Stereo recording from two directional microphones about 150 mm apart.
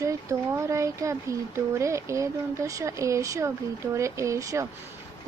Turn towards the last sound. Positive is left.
turn(degrees=-20)  # may be behind; listen again after turning